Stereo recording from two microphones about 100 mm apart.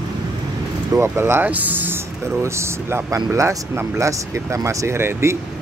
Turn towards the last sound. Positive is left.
turn(degrees=-25)  # may be behind; listen again after turning